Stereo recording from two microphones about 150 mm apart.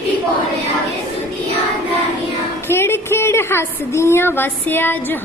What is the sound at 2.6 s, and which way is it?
A woman's voice, 15° left (ahead or behind).